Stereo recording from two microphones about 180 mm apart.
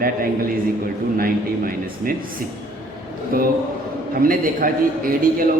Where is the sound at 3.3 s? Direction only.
55° right (ahead or behind).